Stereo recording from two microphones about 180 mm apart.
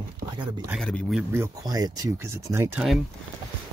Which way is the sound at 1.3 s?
15° right (ahead or behind).